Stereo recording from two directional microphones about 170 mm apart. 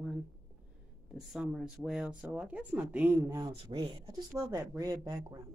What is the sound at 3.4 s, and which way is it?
Speech, 30° right (ahead or behind).